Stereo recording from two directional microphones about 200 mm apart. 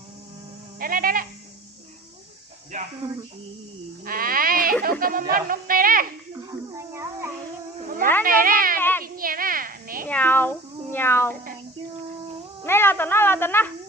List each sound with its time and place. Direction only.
0.8 s a sound: 45° right (ahead or behind)
4.0 s music: 45° right (ahead or behind)
5.3 s speech: 45° right (ahead or behind)
6.3 s a sound: 15° right (ahead or behind)
7.9 s cat: 45° right (ahead or behind)
8.8 s child singing: 10° left (ahead or behind)
9.0 s a sound: 45° right (ahead or behind)
10.1 s speech: 10° left (ahead or behind)
12.6 s speech: 10° left (ahead or behind)